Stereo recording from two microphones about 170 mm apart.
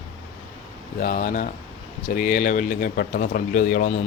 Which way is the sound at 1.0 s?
55° left (ahead or behind).